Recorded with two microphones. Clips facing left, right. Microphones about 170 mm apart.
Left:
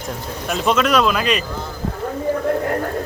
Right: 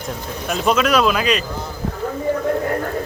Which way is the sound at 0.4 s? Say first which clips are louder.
Even; centre (ahead or behind).